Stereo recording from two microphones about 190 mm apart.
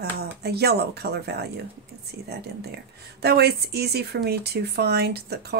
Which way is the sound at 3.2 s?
55° right (ahead or behind).